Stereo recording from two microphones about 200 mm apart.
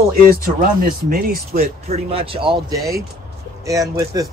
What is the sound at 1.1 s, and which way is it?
Speech, 45° right (ahead or behind).